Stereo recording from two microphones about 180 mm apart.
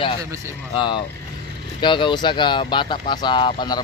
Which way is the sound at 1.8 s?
25° left (ahead or behind).